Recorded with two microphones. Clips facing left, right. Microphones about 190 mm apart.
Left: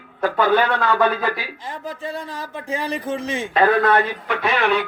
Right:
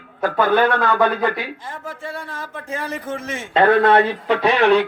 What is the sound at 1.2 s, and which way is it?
Speech, 20° right (ahead or behind).